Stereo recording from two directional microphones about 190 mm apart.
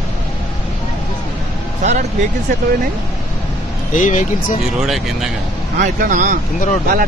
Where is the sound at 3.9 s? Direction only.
40° left (ahead or behind).